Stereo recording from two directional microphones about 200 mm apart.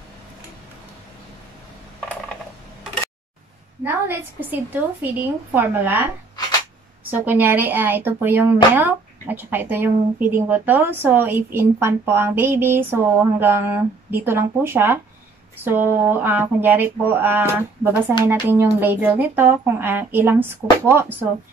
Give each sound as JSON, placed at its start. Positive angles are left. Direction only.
{"t": 3.8, "sound": "speech", "side_deg": -10}
{"t": 7.1, "sound": "speech", "side_deg": -10}